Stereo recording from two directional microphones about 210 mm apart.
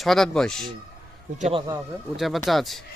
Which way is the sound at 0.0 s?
Centre (ahead or behind).